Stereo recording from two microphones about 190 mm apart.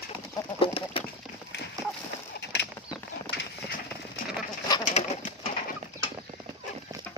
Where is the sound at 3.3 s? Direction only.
65° left (ahead or behind).